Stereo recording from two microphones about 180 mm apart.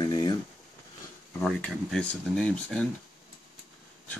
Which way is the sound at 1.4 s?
5° left (ahead or behind).